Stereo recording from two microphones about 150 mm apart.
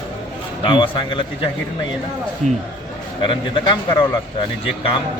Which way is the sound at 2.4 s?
55° right (ahead or behind).